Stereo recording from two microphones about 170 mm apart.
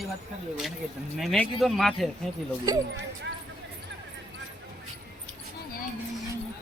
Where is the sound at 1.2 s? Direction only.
Centre (ahead or behind).